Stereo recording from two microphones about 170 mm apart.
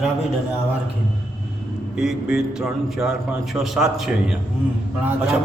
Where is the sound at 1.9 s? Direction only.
5° right (ahead or behind).